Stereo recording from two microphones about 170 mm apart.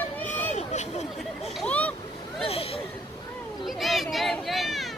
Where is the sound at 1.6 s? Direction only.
10° left (ahead or behind).